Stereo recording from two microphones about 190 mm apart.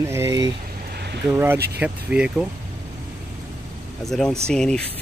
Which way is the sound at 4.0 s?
Centre (ahead or behind).